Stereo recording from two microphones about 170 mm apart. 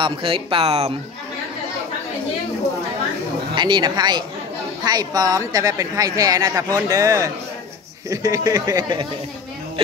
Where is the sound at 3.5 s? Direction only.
25° right (ahead or behind).